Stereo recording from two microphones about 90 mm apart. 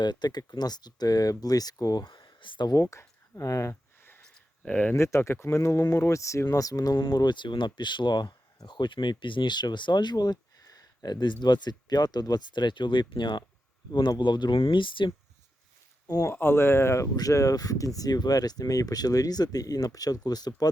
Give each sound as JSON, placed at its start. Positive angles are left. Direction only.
{"t": 0.0, "sound": "speech", "side_deg": 50}
{"t": 2.8, "sound": "speech", "side_deg": 30}
{"t": 3.7, "sound": "a sound", "side_deg": 25}
{"t": 4.6, "sound": "speech", "side_deg": 15}
{"t": 4.9, "sound": "speech", "side_deg": 30}
{"t": 16.0, "sound": "speech", "side_deg": 45}
{"t": 16.3, "sound": "speech", "side_deg": 25}